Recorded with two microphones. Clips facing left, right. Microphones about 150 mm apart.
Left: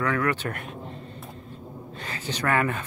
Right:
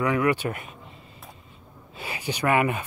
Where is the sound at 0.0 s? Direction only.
10° right (ahead or behind).